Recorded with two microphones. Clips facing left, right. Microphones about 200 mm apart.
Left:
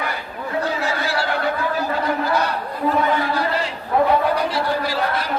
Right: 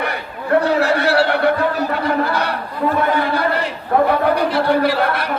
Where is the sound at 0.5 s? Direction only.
65° right (ahead or behind).